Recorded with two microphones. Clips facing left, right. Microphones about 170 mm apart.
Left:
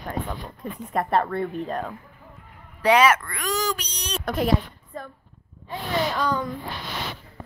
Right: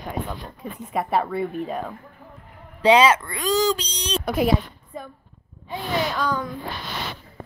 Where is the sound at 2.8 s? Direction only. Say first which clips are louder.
Right 2 dB; 25° right (ahead or behind).